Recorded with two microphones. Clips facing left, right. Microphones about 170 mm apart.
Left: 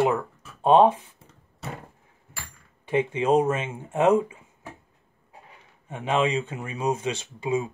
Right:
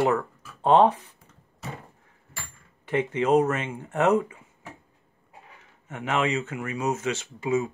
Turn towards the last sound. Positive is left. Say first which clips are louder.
# right 1 dB
turn(degrees=15)  # may be behind; listen again after turning